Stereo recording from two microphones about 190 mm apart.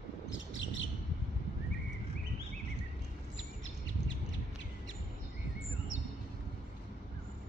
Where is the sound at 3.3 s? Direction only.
85° left.